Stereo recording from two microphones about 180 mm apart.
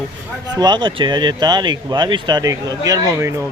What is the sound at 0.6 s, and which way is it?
Speech, 25° right (ahead or behind).